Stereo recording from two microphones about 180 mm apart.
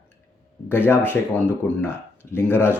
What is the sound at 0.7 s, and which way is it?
Speech, 10° left (ahead or behind).